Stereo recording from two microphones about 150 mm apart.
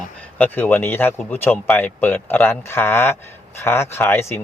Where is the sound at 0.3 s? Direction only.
10° left (ahead or behind).